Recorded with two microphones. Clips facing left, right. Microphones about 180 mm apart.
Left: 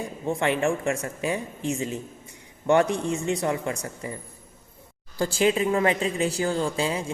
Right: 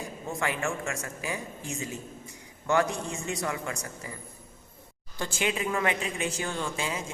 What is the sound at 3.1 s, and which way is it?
Speech, 25° left (ahead or behind).